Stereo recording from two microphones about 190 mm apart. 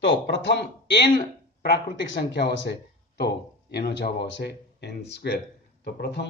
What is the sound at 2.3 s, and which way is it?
Speech, 70° left (ahead or behind).